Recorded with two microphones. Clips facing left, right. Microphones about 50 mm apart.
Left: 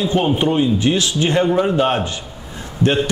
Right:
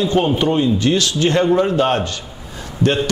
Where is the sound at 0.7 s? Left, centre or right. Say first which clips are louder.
Even; centre.